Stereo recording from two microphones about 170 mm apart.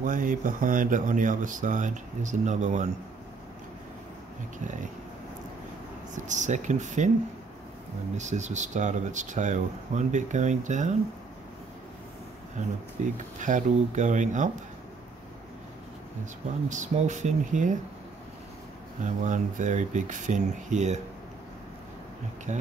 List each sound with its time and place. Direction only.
0.0 s speech: 50° right (ahead or behind)
6.1 s speech: 45° right (ahead or behind)
8.2 s speech: 45° right (ahead or behind)
12.6 s speech: 45° right (ahead or behind)
16.6 s speech: 45° right (ahead or behind)
19.2 s speech: 45° right (ahead or behind)
22.5 s speech: 45° right (ahead or behind)